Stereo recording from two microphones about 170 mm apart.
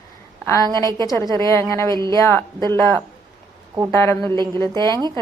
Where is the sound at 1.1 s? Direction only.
20° left (ahead or behind).